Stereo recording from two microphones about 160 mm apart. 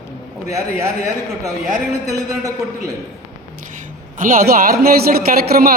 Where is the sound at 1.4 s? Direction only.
20° right (ahead or behind).